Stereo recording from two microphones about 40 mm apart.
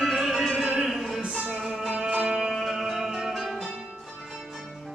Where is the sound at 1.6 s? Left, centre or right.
Centre.